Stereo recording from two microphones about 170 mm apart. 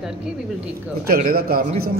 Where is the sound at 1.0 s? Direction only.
60° right (ahead or behind).